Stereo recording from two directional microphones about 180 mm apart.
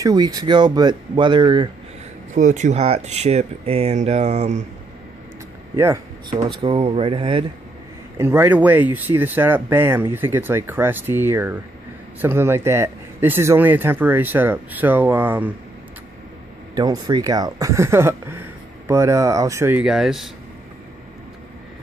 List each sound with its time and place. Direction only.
0.0 s speech: 20° right (ahead or behind)
2.3 s speech: 40° right (ahead or behind)
6.6 s speech: 30° right (ahead or behind)
8.2 s speech: 10° right (ahead or behind)
16.7 s speech: 20° right (ahead or behind); by 20.2 s centre (ahead or behind)